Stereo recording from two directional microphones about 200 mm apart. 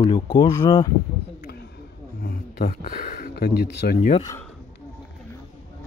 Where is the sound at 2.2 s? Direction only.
50° left (ahead or behind).